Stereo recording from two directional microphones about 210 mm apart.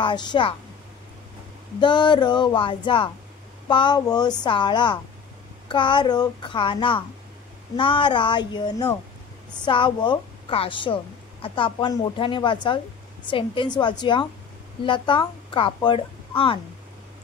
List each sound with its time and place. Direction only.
0.0 s a woman's voice: 20° left (ahead or behind)
1.8 s a woman's voice: 20° left (ahead or behind)